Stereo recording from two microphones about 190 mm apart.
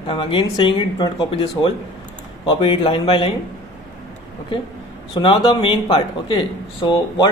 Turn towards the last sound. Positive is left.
turn(degrees=25)  # may be behind; listen again after turning